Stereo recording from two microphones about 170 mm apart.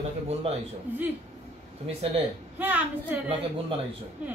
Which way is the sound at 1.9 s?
35° right (ahead or behind).